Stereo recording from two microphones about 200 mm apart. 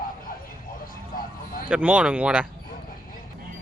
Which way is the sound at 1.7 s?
5° right (ahead or behind).